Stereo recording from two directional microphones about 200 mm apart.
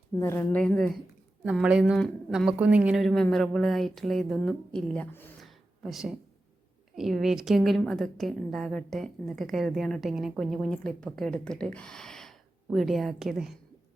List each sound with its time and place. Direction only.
0.2 s a woman's voice: 10° left (ahead or behind)